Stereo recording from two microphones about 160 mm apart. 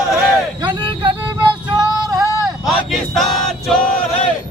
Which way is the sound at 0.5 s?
30° right (ahead or behind).